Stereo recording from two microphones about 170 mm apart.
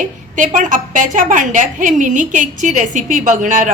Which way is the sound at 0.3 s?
50° right (ahead or behind).